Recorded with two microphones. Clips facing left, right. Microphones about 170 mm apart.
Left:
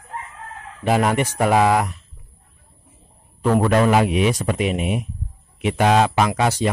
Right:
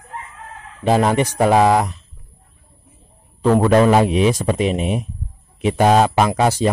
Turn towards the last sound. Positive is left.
turn(degrees=-35)  # may be behind; listen again after turning